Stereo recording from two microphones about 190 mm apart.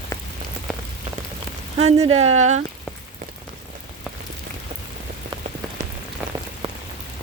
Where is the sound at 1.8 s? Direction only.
35° right (ahead or behind).